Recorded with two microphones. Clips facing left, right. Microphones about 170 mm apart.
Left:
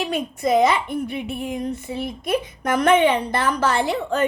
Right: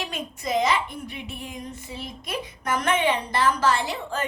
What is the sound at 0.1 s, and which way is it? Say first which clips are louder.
A woman's voice: left 8 dB; 55° left (ahead or behind).